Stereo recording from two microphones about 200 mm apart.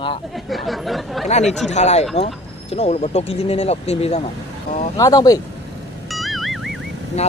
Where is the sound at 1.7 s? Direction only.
35° left (ahead or behind).